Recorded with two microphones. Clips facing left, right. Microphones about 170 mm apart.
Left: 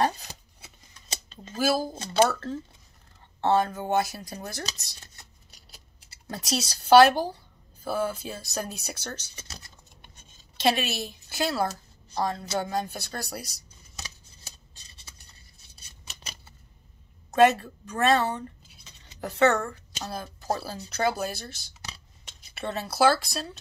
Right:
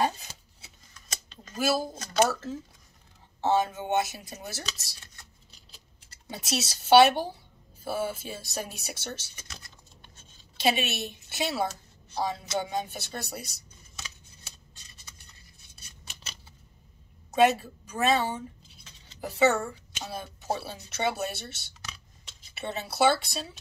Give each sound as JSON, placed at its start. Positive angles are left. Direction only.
{"t": 1.0, "sound": "a sound", "side_deg": 30}
{"t": 1.5, "sound": "speech", "side_deg": 0}
{"t": 2.0, "sound": "speech", "side_deg": 30}
{"t": 2.2, "sound": "speech", "side_deg": -5}
{"t": 6.2, "sound": "speech", "side_deg": 0}
{"t": 10.6, "sound": "speech", "side_deg": 0}
{"t": 13.9, "sound": "scissors", "side_deg": 40}
{"t": 17.3, "sound": "a woman's voice", "side_deg": 0}